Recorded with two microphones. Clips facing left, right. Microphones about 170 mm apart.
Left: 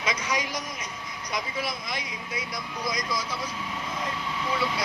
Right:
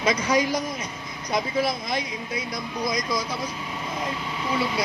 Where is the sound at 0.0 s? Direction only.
35° right (ahead or behind).